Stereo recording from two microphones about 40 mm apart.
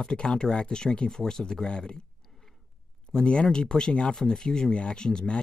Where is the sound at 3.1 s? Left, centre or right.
Left.